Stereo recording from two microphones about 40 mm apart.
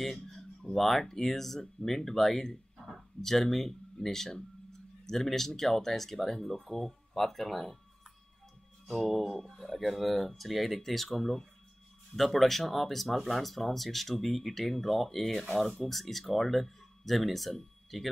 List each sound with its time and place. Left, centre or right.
0.0 s a sound: centre
1.0 s speech: centre
8.8 s speech: centre